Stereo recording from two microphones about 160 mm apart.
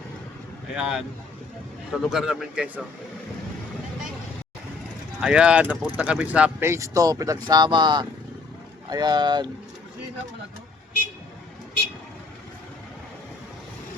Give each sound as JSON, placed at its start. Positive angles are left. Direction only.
{"t": 0.8, "sound": "speech", "side_deg": -5}
{"t": 5.2, "sound": "speech", "side_deg": -5}